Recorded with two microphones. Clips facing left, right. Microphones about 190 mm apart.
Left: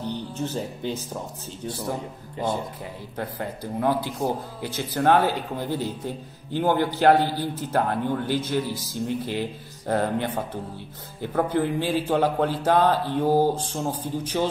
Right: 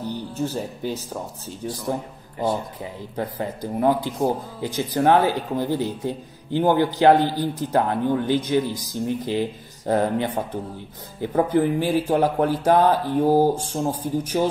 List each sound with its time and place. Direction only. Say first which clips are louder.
0.0 s speech: right 2 dB; 10° right (ahead or behind)
3.2 s a man's voice: right 4 dB; 15° right (ahead or behind)